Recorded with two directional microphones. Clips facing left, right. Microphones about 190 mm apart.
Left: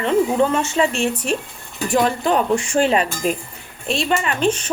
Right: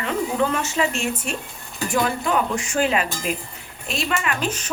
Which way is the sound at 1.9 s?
30° left (ahead or behind).